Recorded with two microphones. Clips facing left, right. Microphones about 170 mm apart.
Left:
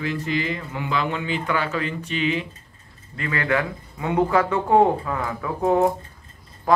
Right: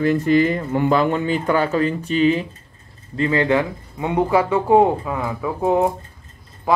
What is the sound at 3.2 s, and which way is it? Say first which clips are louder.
Speech: right 6 dB; 25° right (ahead or behind).